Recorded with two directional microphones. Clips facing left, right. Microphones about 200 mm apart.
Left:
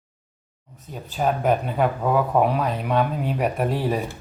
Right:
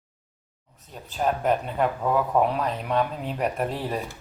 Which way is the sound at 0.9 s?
5° left (ahead or behind).